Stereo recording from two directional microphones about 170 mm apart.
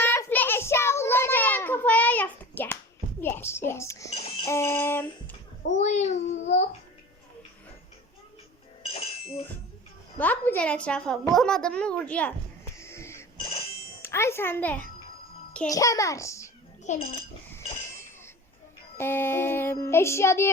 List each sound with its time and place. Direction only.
0.0 s child singing: 10° left (ahead or behind)
3.2 s a woman's voice: 10° left (ahead or behind)
5.6 s a child's voice: 45° left (ahead or behind)
8.8 s a sound: 35° left (ahead or behind)
10.2 s a woman's voice: 10° left (ahead or behind)
12.8 s a sound: 15° left (ahead or behind)
13.3 s ringtone: 35° left (ahead or behind)
14.0 s a woman's voice: 15° left (ahead or behind)
16.9 s a child's voice: 45° left (ahead or behind)
18.9 s a woman's voice: 15° left (ahead or behind)